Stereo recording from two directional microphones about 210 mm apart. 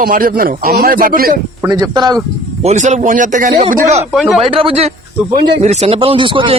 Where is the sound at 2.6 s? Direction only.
35° right (ahead or behind).